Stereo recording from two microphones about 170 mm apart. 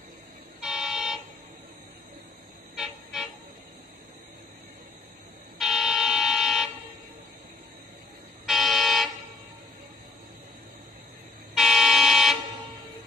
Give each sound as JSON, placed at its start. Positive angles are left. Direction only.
{"t": 0.6, "sound": "vehicle", "side_deg": -5}
{"t": 2.7, "sound": "toot", "side_deg": 0}
{"t": 5.6, "sound": "vehicle", "side_deg": 0}
{"t": 8.5, "sound": "vehicle", "side_deg": 0}
{"t": 11.5, "sound": "vehicle horn", "side_deg": 0}